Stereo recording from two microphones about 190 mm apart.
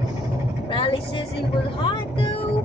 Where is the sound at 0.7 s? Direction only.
25° left (ahead or behind).